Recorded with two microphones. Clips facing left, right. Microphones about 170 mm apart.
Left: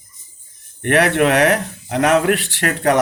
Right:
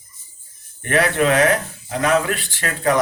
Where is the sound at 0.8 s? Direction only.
65° left (ahead or behind).